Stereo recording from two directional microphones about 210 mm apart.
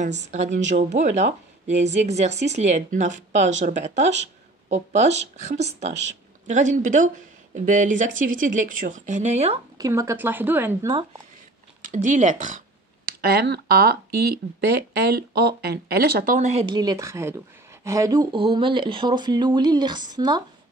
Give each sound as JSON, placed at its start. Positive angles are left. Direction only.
{"t": 0.2, "sound": "speech", "side_deg": -35}
{"t": 9.8, "sound": "speech", "side_deg": -15}
{"t": 11.8, "sound": "speech", "side_deg": -35}
{"t": 13.2, "sound": "speech", "side_deg": -50}
{"t": 16.5, "sound": "speech", "side_deg": -20}